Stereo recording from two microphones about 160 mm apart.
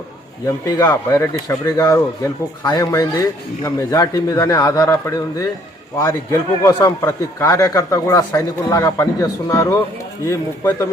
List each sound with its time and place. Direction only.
0.4 s speech: 20° left (ahead or behind)
6.6 s speech: 20° left (ahead or behind)